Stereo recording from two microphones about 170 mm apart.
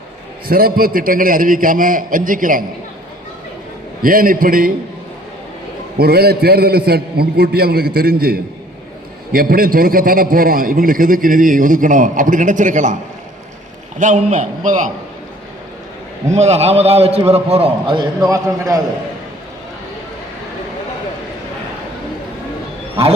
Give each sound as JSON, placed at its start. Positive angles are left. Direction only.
{"t": 0.4, "sound": "a man's voice", "side_deg": -60}
{"t": 4.0, "sound": "a man's voice", "side_deg": -55}
{"t": 6.0, "sound": "a man's voice", "side_deg": -65}
{"t": 14.0, "sound": "a man's voice", "side_deg": -45}
{"t": 16.3, "sound": "a man's voice", "side_deg": -40}